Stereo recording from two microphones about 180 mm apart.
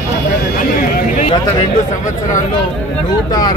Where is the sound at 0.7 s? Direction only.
55° left (ahead or behind).